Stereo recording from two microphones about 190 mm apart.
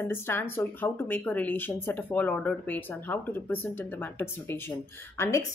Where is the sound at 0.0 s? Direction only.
10° left (ahead or behind).